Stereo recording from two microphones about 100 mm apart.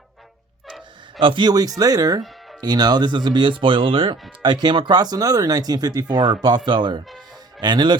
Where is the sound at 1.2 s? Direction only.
55° right (ahead or behind).